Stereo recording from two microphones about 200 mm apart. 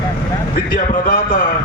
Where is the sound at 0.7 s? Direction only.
45° left (ahead or behind).